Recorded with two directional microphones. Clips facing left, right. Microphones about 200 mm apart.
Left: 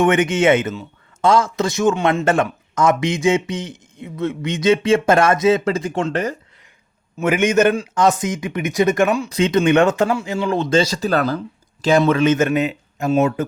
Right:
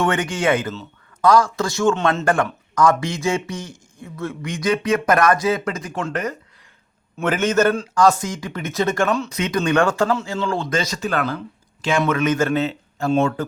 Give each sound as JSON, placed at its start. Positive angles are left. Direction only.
{"t": 0.0, "sound": "speech", "side_deg": 20}
{"t": 7.2, "sound": "speech", "side_deg": 10}
{"t": 9.3, "sound": "speech", "side_deg": 25}